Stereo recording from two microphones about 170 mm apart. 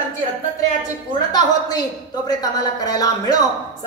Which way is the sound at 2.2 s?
25° left (ahead or behind).